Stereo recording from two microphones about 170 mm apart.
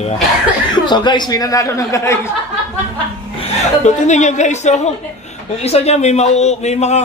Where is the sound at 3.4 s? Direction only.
45° left (ahead or behind).